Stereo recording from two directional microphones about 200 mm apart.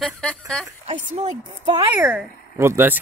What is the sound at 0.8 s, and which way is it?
Speech, 35° right (ahead or behind).